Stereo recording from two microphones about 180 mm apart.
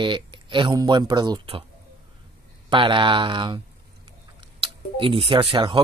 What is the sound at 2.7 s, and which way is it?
Speech, 25° right (ahead or behind).